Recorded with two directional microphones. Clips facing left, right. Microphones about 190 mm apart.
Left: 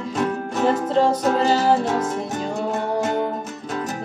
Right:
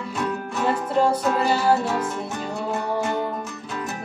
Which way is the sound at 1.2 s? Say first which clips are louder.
Left 2 dB; 45° left (ahead or behind).